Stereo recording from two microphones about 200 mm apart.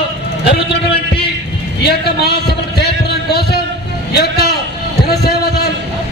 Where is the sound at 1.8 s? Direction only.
55° left (ahead or behind).